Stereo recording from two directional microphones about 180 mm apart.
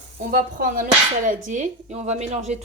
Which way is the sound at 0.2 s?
55° right (ahead or behind).